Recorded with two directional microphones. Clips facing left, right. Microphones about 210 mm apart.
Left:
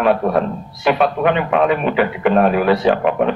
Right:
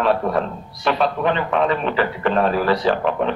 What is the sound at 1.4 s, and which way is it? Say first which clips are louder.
Speech: left 4 dB; 10° left (ahead or behind).